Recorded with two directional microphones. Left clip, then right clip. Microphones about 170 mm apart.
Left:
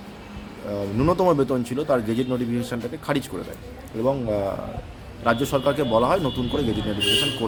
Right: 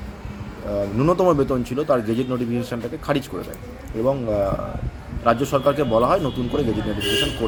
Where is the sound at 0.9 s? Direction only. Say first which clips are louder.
Right 1 dB; 10° left (ahead or behind).